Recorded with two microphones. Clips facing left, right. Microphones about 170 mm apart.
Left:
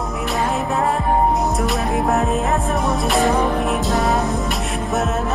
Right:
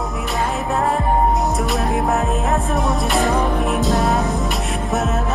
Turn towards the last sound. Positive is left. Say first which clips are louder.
# even
turn(degrees=0)  # may be behind; listen again after turning